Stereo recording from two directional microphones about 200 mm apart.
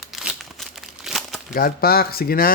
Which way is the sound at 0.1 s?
Centre (ahead or behind).